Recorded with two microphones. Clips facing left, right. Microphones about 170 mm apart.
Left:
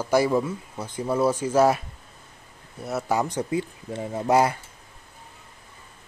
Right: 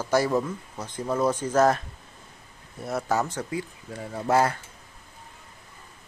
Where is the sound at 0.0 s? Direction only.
10° left (ahead or behind).